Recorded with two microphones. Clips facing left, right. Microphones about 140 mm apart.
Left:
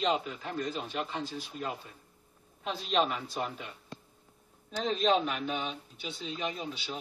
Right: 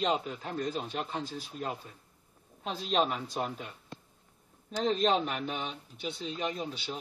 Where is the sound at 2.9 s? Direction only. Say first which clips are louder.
Even; 40° right (ahead or behind).